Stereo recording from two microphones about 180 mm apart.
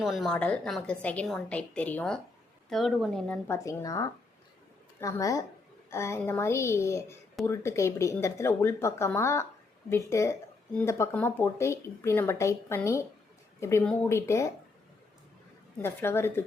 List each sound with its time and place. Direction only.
0.0 s a woman's voice: centre (ahead or behind)
3.4 s speech: 15° left (ahead or behind)
15.8 s speech: 15° left (ahead or behind)